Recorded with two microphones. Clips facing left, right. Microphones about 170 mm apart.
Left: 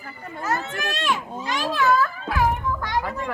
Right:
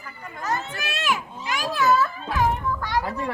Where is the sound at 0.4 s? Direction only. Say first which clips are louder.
Left 1 dB; 5° left (ahead or behind).